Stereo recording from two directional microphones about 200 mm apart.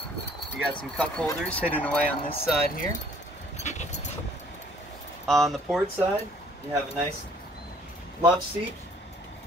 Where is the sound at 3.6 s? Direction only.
35° left (ahead or behind).